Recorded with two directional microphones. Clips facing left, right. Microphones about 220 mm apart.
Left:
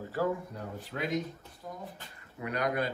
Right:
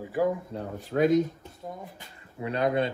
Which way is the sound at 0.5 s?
25° right (ahead or behind).